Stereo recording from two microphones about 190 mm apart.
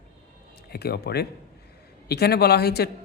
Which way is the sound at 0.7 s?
55° left (ahead or behind).